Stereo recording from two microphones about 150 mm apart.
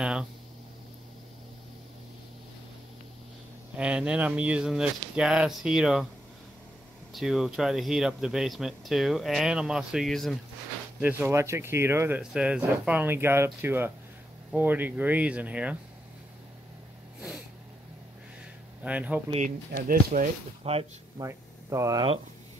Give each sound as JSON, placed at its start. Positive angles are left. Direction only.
{"t": 0.0, "sound": "speech", "side_deg": -5}
{"t": 3.7, "sound": "speech", "side_deg": -5}
{"t": 7.1, "sound": "speech", "side_deg": 0}
{"t": 11.0, "sound": "speech", "side_deg": -10}
{"t": 18.8, "sound": "speech", "side_deg": -10}
{"t": 19.9, "sound": "speech", "side_deg": -65}
{"t": 20.6, "sound": "speech", "side_deg": -40}
{"t": 21.2, "sound": "speech", "side_deg": -20}